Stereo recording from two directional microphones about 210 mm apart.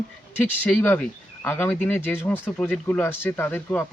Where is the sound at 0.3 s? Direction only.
5° left (ahead or behind).